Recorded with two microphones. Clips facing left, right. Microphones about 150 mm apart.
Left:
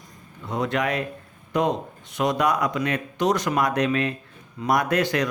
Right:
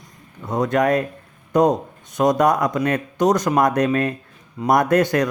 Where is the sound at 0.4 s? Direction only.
45° right (ahead or behind).